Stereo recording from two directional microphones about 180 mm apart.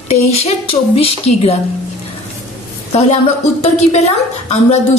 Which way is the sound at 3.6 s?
35° left (ahead or behind).